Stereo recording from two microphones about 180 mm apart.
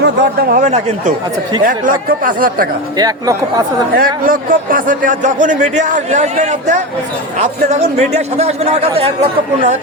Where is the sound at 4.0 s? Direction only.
50° right (ahead or behind); by 9.1 s 35° right (ahead or behind).